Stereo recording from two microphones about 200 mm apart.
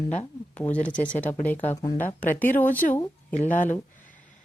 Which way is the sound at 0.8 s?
40° left (ahead or behind).